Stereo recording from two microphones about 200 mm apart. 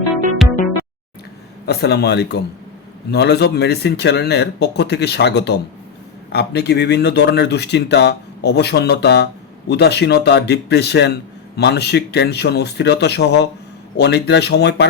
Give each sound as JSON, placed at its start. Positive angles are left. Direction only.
{"t": 0.4, "sound": "music", "side_deg": 0}
{"t": 1.6, "sound": "speech", "side_deg": 55}